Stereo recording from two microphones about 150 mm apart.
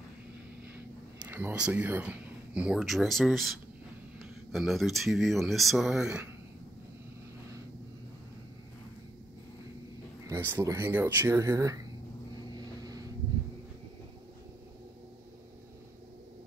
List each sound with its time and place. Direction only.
1.2 s speech: 10° right (ahead or behind)
10.2 s speech: 15° right (ahead or behind)
12.5 s vehicle: 25° right (ahead or behind)